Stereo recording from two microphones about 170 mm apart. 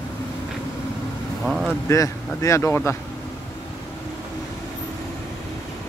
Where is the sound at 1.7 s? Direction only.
15° left (ahead or behind).